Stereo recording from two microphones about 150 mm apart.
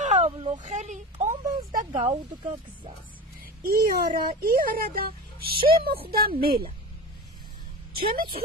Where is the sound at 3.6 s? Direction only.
85° right.